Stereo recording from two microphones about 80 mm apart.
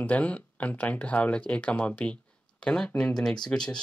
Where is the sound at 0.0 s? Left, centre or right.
Centre.